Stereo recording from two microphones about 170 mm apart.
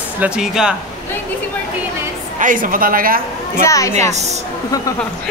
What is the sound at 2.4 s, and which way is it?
A woman's voice, 55° right (ahead or behind).